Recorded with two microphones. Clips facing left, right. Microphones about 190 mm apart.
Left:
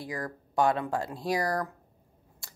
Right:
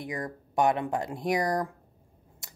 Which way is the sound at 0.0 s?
20° right (ahead or behind).